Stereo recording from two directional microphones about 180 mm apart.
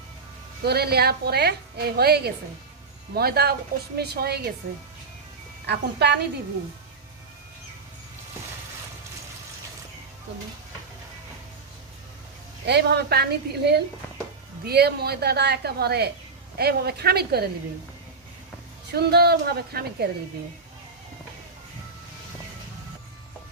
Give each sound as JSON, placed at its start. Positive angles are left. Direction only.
{"t": 0.6, "sound": "a woman's voice", "side_deg": -60}
{"t": 5.6, "sound": "a woman's voice", "side_deg": -65}
{"t": 12.6, "sound": "a woman's voice", "side_deg": -65}
{"t": 18.9, "sound": "a woman's voice", "side_deg": -60}